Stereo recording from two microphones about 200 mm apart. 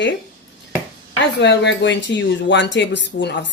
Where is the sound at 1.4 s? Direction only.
60° left (ahead or behind).